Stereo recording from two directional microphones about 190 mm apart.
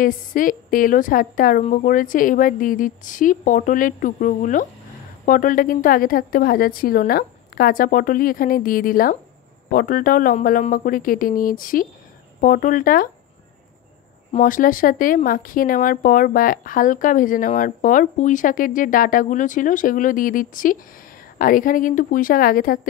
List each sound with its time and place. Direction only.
0.0 s a woman's voice: 45° left (ahead or behind)
14.4 s a woman's voice: 45° left (ahead or behind)